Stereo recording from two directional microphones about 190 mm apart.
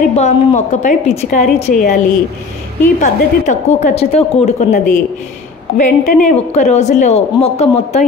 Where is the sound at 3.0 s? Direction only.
40° left (ahead or behind).